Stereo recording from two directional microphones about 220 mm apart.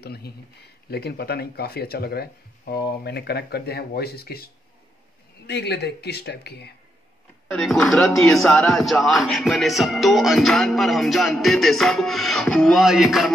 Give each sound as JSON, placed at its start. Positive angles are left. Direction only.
{"t": 0.0, "sound": "speech", "side_deg": 45}
{"t": 5.5, "sound": "speech", "side_deg": 50}
{"t": 7.5, "sound": "speech", "side_deg": 0}